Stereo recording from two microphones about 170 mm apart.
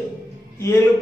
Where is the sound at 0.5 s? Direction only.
15° left (ahead or behind).